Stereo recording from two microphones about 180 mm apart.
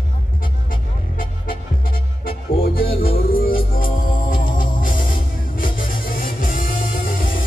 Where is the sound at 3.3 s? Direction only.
55° left (ahead or behind).